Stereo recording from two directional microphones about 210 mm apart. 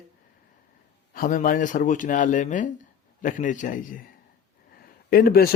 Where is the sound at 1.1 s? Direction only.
40° left (ahead or behind).